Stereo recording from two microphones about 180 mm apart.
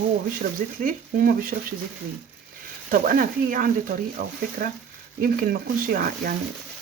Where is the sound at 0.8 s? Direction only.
55° right (ahead or behind).